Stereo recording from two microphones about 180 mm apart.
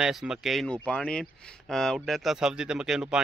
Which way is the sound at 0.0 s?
5° right (ahead or behind).